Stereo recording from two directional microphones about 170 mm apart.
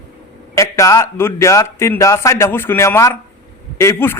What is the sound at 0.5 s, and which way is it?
A man's voice, 20° left (ahead or behind).